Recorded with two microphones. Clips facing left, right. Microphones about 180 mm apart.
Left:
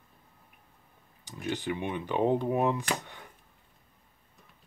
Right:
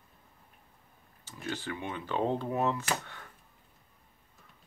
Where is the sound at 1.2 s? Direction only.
15° left (ahead or behind).